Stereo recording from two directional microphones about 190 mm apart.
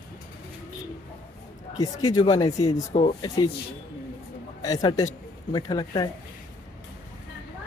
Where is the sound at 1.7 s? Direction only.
20° left (ahead or behind).